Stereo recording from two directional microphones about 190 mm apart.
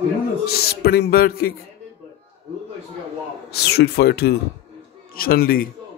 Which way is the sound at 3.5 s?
60° left (ahead or behind).